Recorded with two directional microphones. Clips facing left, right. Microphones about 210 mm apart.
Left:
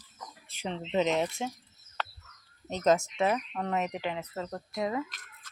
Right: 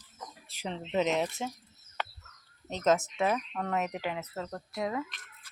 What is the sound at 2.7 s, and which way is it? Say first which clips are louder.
Speech: left 1 dB; centre (ahead or behind).